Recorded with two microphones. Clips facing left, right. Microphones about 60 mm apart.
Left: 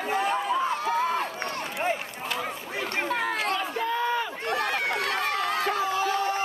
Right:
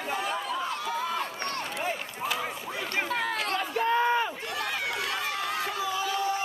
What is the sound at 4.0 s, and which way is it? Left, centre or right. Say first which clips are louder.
Run: right 2 dB; right.